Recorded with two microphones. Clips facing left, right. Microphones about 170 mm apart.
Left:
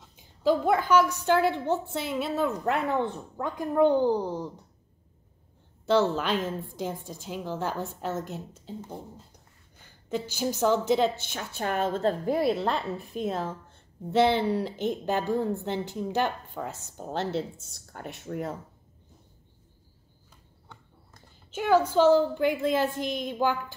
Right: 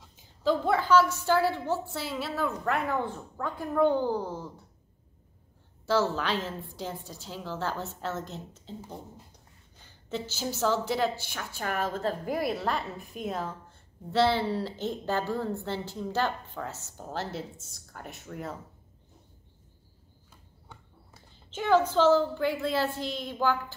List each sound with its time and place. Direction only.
0.4 s a woman's voice: 15° left (ahead or behind)
5.9 s a woman's voice: 20° left (ahead or behind)
10.0 s a woman's voice: 15° left (ahead or behind)
18.3 s speech: 40° left (ahead or behind)
21.5 s a woman's voice: 10° left (ahead or behind)